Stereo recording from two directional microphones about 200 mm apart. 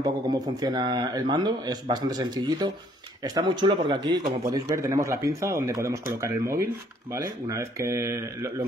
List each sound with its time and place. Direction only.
0.0 s speech: 20° right (ahead or behind)